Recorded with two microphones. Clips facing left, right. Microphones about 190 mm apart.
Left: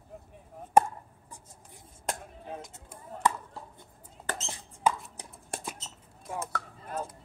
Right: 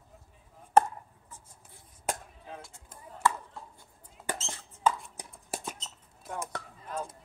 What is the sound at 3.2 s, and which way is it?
Chop, 15° left (ahead or behind).